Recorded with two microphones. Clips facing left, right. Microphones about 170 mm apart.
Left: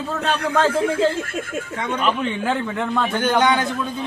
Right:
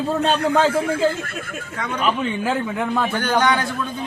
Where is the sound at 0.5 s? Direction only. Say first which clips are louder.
Even; 10° right (ahead or behind).